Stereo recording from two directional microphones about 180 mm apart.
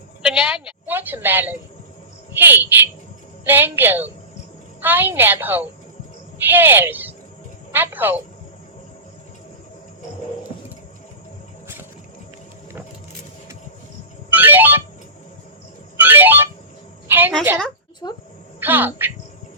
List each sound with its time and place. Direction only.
0.2 s a sound: 5° right (ahead or behind)
0.9 s a woman's voice: 10° right (ahead or behind)
14.3 s music: 10° right (ahead or behind)
16.0 s ringtone: 10° right (ahead or behind)
17.1 s a sound: 10° right (ahead or behind)
18.0 s speech: 20° left (ahead or behind)
18.6 s a woman's voice: 10° right (ahead or behind)